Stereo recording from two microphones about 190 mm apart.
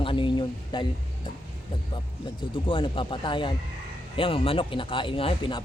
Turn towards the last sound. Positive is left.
turn(degrees=25)  # may be behind; listen again after turning